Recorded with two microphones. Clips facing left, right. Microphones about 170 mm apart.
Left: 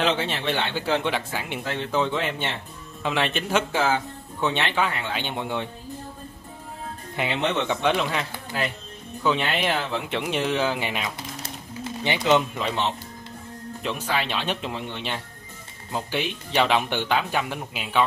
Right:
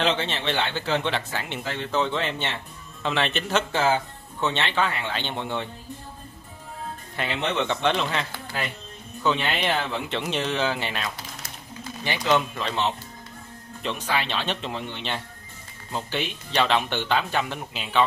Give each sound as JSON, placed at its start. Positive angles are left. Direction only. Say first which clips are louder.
{"t": 0.0, "sound": "speech", "louder": "left 1 dB", "side_deg": 10}
{"t": 7.2, "sound": "speech", "louder": "left 2 dB", "side_deg": 15}
{"t": 11.4, "sound": "a sound", "louder": "left 5 dB", "side_deg": 25}
{"t": 13.8, "sound": "speech", "louder": "even", "side_deg": 10}